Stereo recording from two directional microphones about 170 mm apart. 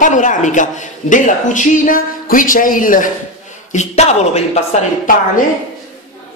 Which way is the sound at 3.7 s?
40° left (ahead or behind).